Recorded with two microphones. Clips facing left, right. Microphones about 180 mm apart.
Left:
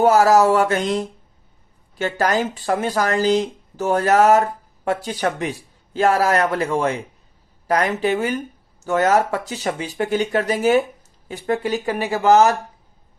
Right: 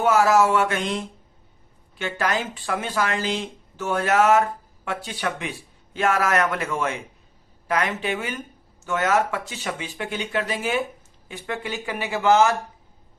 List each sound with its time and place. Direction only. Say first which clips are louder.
0.0 s speech: left 4 dB; 35° left (ahead or behind)